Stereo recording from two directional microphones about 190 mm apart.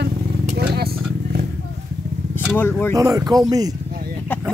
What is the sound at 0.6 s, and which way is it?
Vehicle, 55° right (ahead or behind).